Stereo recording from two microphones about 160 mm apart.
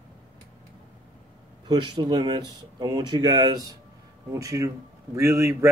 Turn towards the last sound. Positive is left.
turn(degrees=-20)  # may be behind; listen again after turning